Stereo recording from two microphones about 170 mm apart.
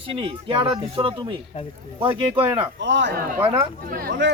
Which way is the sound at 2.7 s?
90° right.